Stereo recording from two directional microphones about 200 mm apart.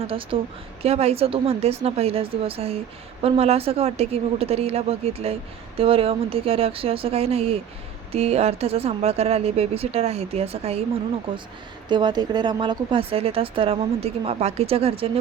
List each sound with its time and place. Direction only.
0.0 s a woman's voice: 25° right (ahead or behind)
11.9 s speech: 20° right (ahead or behind)